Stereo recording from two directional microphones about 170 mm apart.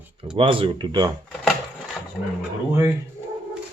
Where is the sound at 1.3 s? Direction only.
5° left (ahead or behind).